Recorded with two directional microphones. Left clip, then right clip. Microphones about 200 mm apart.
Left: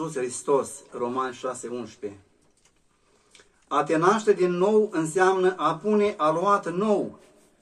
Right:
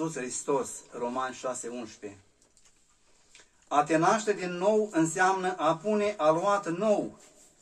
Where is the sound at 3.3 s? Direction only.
40° left (ahead or behind).